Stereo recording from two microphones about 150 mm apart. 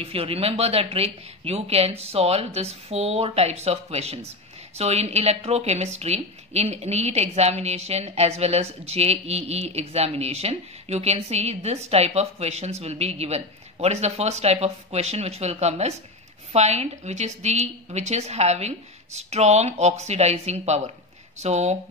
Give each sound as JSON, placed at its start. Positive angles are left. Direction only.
{"t": 0.0, "sound": "a woman's voice", "side_deg": -40}